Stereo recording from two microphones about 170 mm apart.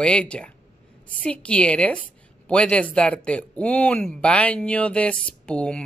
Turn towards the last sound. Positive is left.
turn(degrees=5)  # may be behind; listen again after turning